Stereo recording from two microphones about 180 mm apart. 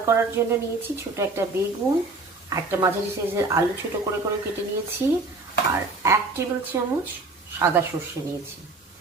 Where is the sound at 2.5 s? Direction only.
15° right (ahead or behind).